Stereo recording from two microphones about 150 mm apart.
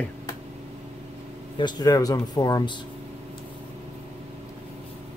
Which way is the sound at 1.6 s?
30° left (ahead or behind).